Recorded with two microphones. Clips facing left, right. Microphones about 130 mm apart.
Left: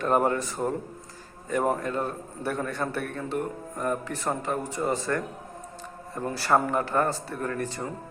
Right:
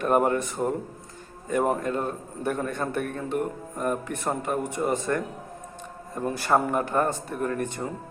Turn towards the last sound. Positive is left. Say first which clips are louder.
# right 3 dB
turn(degrees=-20)  # may be behind; listen again after turning